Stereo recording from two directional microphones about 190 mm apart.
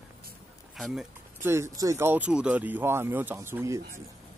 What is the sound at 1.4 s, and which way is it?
Speech, 15° right (ahead or behind).